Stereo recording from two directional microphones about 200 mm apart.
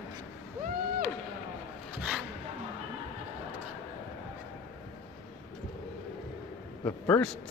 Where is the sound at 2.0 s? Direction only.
5° right (ahead or behind).